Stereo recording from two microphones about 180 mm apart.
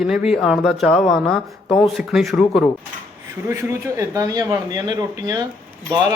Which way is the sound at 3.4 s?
15° right (ahead or behind).